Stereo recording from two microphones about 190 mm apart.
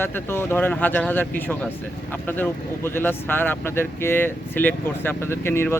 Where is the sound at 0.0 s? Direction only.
10° left (ahead or behind).